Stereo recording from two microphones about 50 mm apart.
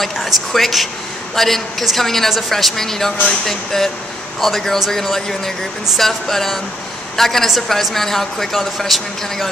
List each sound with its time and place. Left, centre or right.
0.5 s a woman's voice: centre